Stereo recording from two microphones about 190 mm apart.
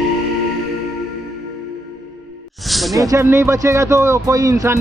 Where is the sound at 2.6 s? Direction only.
Centre (ahead or behind).